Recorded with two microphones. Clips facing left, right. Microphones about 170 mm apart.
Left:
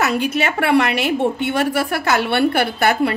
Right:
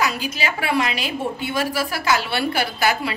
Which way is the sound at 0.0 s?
65° left (ahead or behind).